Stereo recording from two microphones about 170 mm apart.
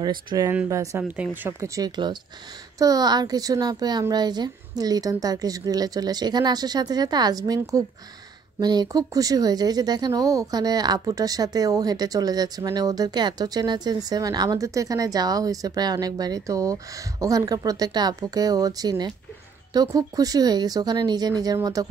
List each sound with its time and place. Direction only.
0.0 s speech: 25° right (ahead or behind)
0.5 s speech: 15° right (ahead or behind)
1.8 s speech: 25° right (ahead or behind)